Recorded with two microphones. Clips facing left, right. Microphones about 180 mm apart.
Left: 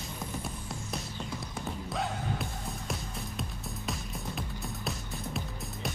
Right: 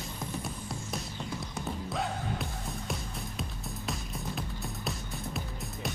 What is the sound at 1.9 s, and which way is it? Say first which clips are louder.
Music: left 1 dB; centre (ahead or behind).